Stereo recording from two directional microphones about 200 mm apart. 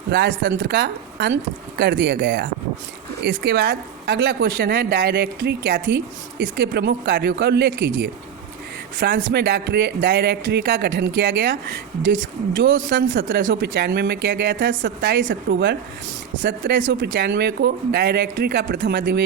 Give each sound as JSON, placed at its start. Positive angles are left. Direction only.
{"t": 0.1, "sound": "a woman's voice", "side_deg": -55}